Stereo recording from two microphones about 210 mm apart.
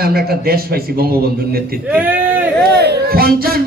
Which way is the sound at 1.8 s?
5° right (ahead or behind).